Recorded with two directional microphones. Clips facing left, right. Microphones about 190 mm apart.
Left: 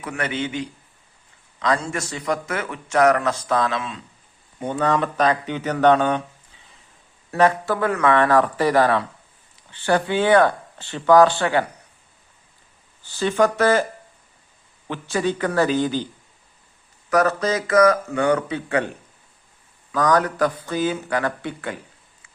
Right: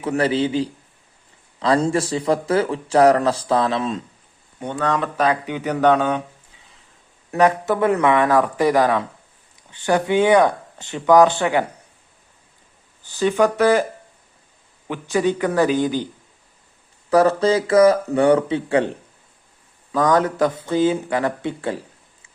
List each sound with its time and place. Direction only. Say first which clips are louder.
0.0 s a man's voice: right 7 dB; 30° right (ahead or behind)
4.6 s speech: left 1 dB; 5° left (ahead or behind)
5.1 s speech: even; 10° right (ahead or behind)
7.3 s speech: right 1 dB; 15° right (ahead or behind)
13.1 s speech: right 2 dB; 15° right (ahead or behind)
14.8 s speech: right 3 dB; 15° right (ahead or behind)
17.1 s speech: right 4 dB; 30° right (ahead or behind)